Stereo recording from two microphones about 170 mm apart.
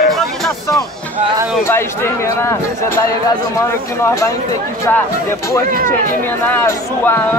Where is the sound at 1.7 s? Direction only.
15° left (ahead or behind).